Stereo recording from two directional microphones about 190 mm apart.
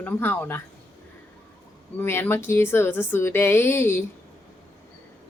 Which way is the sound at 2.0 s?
10° left (ahead or behind).